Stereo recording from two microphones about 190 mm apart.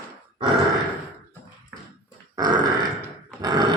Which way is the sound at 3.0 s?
20° right (ahead or behind).